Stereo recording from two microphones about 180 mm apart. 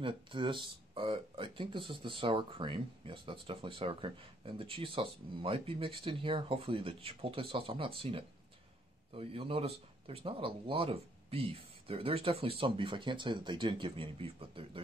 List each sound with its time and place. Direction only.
0.0 s speech: 25° right (ahead or behind)